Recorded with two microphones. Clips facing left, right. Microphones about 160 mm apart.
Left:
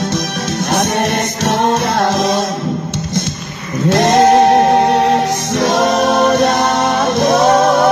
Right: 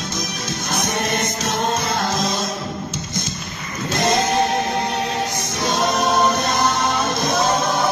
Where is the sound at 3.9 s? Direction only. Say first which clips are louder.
Left 9 dB; 70° left (ahead or behind).